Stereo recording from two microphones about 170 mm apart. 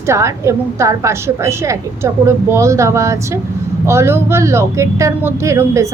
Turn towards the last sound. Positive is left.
turn(degrees=-15)  # may be behind; listen again after turning